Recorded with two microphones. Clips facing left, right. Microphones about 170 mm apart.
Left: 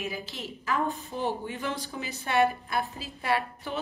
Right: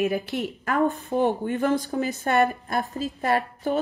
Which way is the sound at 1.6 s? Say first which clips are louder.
Right 10 dB; 40° right (ahead or behind).